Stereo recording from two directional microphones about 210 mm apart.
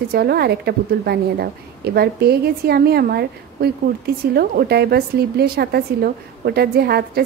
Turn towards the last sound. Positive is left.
turn(degrees=-50)  # may be behind; listen again after turning